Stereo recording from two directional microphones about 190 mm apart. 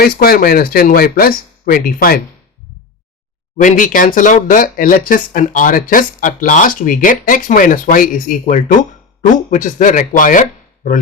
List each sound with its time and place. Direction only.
0.0 s speech: 50° left (ahead or behind)
3.6 s speech: 45° left (ahead or behind)